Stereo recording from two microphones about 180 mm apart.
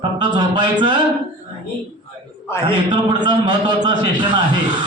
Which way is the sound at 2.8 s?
25° right (ahead or behind).